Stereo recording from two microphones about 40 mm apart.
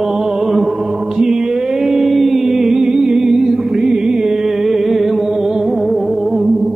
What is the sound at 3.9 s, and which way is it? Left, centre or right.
Music, right.